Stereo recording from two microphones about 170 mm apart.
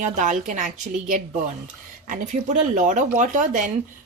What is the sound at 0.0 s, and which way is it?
Speech, 45° right (ahead or behind).